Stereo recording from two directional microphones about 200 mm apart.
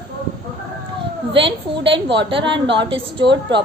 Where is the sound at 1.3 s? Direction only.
25° right (ahead or behind).